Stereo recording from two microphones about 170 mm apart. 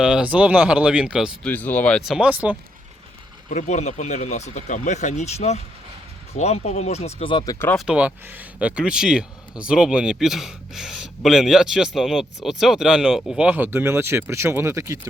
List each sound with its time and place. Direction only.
0.0 s speech: 5° right (ahead or behind)
1.5 s speech: 10° left (ahead or behind); by 2.6 s 10° right (ahead or behind)
3.5 s speech: 45° left (ahead or behind); by 7.7 s 20° left (ahead or behind)
7.9 s speech: 10° right (ahead or behind)